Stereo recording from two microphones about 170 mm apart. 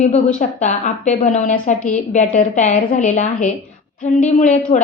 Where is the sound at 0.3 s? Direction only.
45° left (ahead or behind).